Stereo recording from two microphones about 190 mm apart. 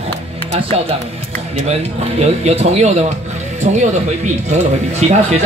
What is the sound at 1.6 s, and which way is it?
Speech, 35° right (ahead or behind).